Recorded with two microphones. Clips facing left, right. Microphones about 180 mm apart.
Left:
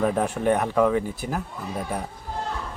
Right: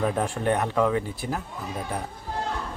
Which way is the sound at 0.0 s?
Centre (ahead or behind).